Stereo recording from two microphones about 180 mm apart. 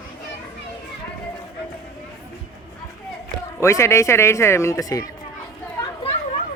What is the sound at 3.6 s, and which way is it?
Speech, 15° left (ahead or behind).